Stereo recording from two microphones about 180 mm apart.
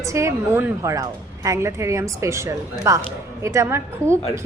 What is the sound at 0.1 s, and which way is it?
A woman's voice, 15° right (ahead or behind).